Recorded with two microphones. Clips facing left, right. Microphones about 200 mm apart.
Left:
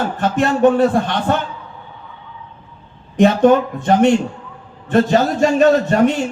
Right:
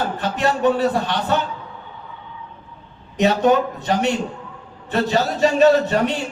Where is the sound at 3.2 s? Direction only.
50° left (ahead or behind).